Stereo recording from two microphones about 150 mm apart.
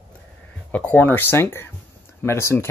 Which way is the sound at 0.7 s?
10° left (ahead or behind).